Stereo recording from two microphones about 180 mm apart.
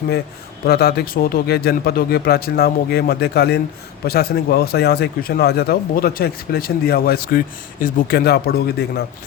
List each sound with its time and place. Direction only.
0.6 s speech: 60° left (ahead or behind)